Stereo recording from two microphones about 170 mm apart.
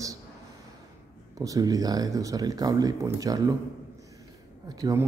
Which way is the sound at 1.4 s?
20° right (ahead or behind).